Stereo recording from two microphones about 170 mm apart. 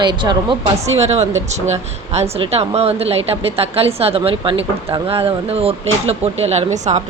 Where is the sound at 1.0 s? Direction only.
40° right (ahead or behind).